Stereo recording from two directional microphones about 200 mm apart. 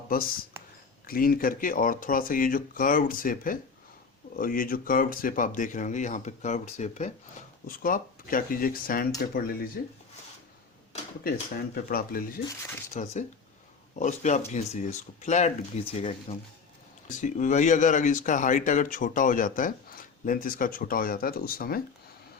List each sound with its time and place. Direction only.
1.0 s speech: 45° left (ahead or behind)
11.2 s speech: 50° left (ahead or behind)
12.9 s speech: 35° left (ahead or behind)
17.2 s speech: 40° left (ahead or behind)